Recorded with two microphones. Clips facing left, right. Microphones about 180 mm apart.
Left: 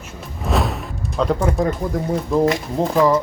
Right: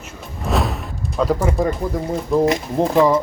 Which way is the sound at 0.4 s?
Centre (ahead or behind).